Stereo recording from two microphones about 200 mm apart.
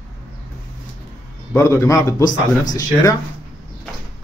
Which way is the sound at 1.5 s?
15° left (ahead or behind).